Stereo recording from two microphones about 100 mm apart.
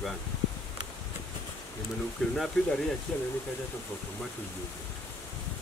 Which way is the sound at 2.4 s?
5° left (ahead or behind).